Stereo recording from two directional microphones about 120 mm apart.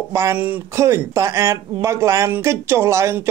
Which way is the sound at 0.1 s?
25° right (ahead or behind).